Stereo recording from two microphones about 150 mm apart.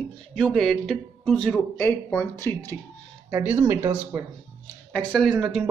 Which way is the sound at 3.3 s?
15° right (ahead or behind).